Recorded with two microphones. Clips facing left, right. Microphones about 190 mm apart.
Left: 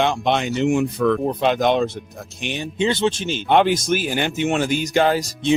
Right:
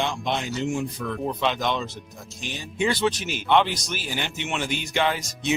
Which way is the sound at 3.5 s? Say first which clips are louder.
Left 5 dB; 50° left (ahead or behind).